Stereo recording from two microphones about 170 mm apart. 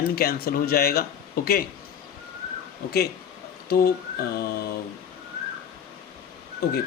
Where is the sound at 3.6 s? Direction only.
60° left (ahead or behind).